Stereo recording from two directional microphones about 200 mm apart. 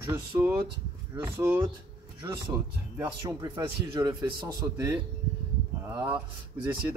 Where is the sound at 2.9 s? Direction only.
20° right (ahead or behind).